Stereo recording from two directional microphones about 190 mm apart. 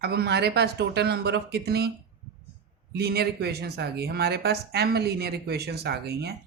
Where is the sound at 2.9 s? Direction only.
55° right (ahead or behind).